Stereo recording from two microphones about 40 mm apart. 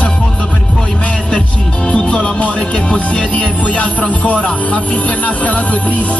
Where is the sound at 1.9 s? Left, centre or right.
Left.